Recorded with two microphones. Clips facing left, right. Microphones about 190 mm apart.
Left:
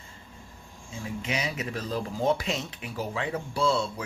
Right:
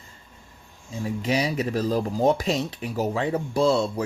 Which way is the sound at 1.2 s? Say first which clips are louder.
Right 8 dB; 35° right (ahead or behind).